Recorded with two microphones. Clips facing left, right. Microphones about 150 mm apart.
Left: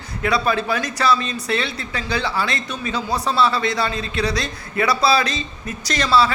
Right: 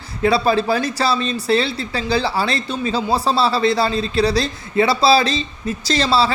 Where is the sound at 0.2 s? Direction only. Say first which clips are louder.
Right 4 dB; 30° right (ahead or behind).